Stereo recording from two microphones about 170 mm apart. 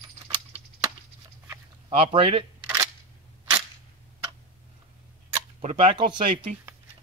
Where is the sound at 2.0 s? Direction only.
35° right (ahead or behind).